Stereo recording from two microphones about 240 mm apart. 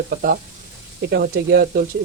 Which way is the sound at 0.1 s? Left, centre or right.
Right.